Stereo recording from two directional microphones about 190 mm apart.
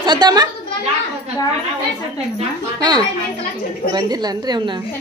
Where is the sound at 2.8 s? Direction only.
20° right (ahead or behind).